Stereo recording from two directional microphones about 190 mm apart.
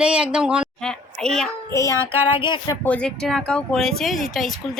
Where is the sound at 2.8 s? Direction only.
5° left (ahead or behind).